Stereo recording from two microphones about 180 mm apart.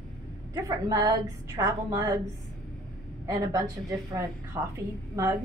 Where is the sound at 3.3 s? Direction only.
20° right (ahead or behind).